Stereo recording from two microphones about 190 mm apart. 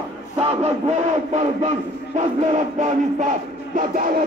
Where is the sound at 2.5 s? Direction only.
40° right (ahead or behind).